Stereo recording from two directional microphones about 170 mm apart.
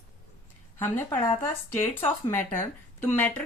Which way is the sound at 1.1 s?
15° left (ahead or behind).